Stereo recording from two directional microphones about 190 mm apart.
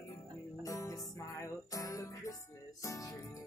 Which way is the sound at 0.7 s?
15° left (ahead or behind).